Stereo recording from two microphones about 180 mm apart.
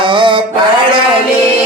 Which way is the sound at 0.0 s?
25° right (ahead or behind).